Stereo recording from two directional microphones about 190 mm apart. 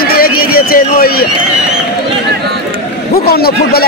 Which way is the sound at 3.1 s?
55° left (ahead or behind).